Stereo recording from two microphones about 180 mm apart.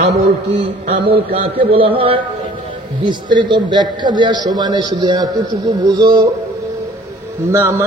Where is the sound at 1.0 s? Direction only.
30° right (ahead or behind).